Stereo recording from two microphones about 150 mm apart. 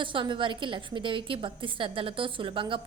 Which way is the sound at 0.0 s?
35° right (ahead or behind).